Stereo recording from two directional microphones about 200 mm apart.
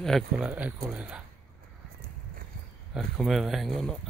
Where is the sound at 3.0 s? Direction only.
Centre (ahead or behind).